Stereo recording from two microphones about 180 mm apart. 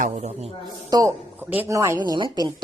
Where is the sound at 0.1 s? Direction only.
35° right (ahead or behind).